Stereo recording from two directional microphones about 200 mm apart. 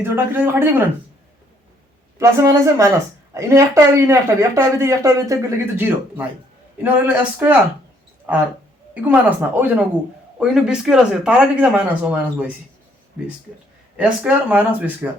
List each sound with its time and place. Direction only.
0.0 s speech: 10° right (ahead or behind)
2.1 s speech: 15° right (ahead or behind)
9.6 s speech: 10° right (ahead or behind)
13.9 s speech: 5° right (ahead or behind)